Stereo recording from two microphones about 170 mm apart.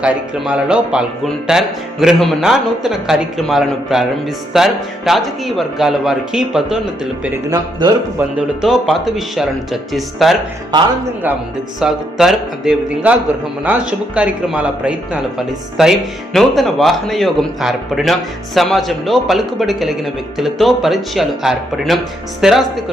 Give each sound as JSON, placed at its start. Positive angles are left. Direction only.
{"t": 0.0, "sound": "speech", "side_deg": -5}
{"t": 7.5, "sound": "speech", "side_deg": -20}
{"t": 8.6, "sound": "speech", "side_deg": 0}
{"t": 11.8, "sound": "speech", "side_deg": 0}
{"t": 14.2, "sound": "speech", "side_deg": -5}